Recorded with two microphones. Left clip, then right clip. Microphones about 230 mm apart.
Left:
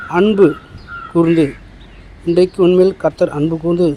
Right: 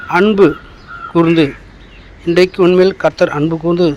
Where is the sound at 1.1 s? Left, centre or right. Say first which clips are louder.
Right 2 dB; right.